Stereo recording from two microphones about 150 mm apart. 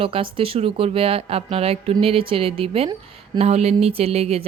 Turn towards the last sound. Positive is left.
turn(degrees=-45)  # may be behind; listen again after turning